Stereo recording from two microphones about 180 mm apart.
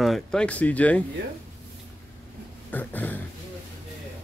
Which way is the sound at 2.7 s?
10° left (ahead or behind).